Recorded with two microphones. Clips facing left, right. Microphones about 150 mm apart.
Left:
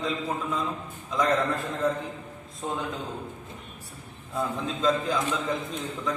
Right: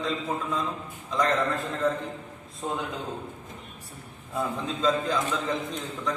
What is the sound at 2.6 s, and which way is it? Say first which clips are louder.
Speech: right 1 dB; centre (ahead or behind).